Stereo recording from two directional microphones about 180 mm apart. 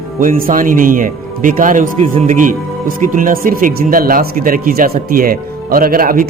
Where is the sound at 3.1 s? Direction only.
50° right (ahead or behind).